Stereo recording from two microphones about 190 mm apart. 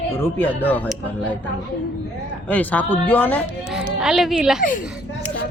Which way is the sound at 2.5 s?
10° left (ahead or behind).